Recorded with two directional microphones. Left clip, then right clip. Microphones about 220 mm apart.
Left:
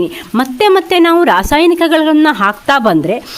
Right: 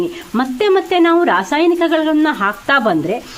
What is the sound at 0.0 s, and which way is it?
A woman's voice, 50° left (ahead or behind).